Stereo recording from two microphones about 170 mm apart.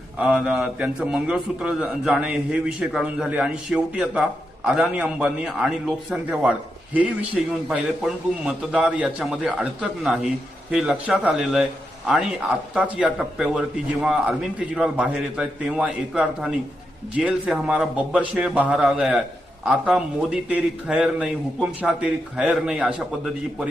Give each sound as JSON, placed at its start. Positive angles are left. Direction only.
{"t": 0.2, "sound": "a man's voice", "side_deg": -5}
{"t": 12.7, "sound": "a man's voice", "side_deg": -5}